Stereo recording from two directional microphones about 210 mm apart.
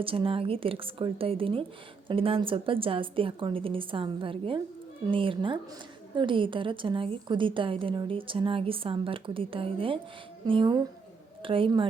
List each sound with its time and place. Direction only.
0.0 s a woman's voice: 25° right (ahead or behind)